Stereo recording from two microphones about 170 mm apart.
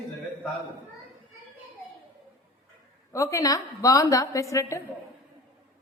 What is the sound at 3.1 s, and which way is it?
A woman's voice, 20° left (ahead or behind).